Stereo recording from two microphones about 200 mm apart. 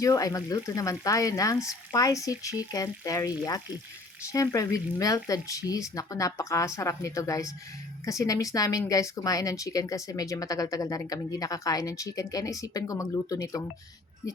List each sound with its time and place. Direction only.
0.0 s speech: 15° left (ahead or behind)